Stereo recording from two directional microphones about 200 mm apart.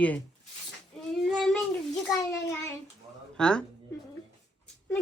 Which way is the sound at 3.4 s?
5° left (ahead or behind).